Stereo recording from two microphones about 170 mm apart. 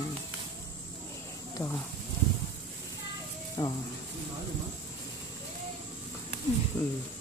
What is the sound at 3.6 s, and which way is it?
Speech, 20° left (ahead or behind).